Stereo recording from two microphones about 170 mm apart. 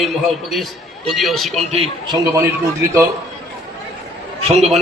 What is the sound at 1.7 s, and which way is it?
Speech, 35° right (ahead or behind).